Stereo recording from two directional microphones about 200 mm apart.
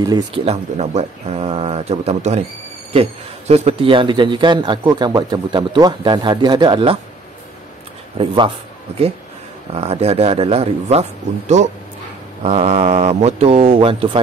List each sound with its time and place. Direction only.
0.0 s speech: 25° right (ahead or behind)
9.8 s speech: 30° right (ahead or behind)